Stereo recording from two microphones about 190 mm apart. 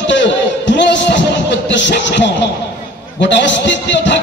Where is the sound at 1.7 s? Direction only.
70° left (ahead or behind).